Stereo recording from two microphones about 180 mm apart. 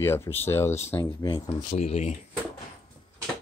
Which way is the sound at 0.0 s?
15° left (ahead or behind).